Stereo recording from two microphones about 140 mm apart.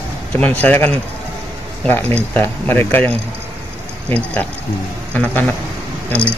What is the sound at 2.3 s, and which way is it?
Speech, 15° left (ahead or behind).